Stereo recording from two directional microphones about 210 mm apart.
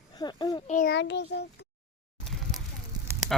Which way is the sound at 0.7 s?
35° left (ahead or behind).